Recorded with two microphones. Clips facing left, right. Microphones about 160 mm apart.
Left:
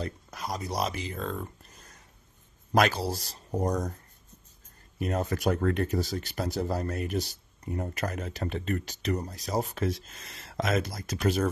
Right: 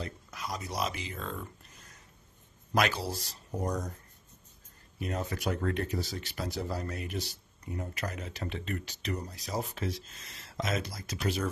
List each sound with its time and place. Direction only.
0.0 s speech: 40° left (ahead or behind)
2.7 s speech: 40° left (ahead or behind)
4.9 s speech: 50° left (ahead or behind)